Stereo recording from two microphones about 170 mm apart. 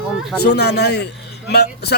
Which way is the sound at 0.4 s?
75° left (ahead or behind).